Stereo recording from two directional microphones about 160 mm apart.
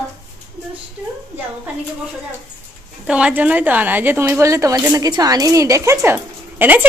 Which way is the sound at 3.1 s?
5° right (ahead or behind).